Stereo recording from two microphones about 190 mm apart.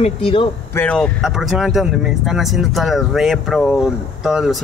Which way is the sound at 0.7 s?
5° left (ahead or behind).